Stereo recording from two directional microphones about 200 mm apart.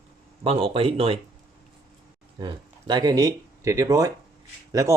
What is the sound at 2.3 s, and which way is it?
Speech, 20° right (ahead or behind).